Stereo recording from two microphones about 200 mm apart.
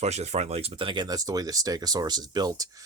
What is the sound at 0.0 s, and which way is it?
Speech, 35° right (ahead or behind).